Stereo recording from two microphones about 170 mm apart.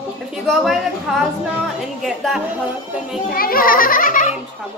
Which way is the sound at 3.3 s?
60° left (ahead or behind).